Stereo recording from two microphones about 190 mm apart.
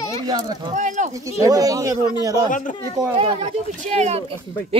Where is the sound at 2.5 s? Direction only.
45° left (ahead or behind).